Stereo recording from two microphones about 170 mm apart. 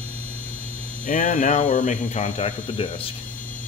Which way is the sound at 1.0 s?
50° left (ahead or behind).